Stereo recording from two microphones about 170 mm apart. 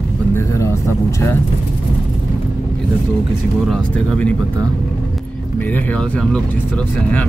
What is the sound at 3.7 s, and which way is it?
Speech, 10° left (ahead or behind).